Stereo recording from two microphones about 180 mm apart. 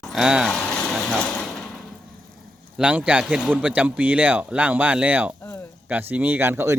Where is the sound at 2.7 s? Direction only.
5° right (ahead or behind).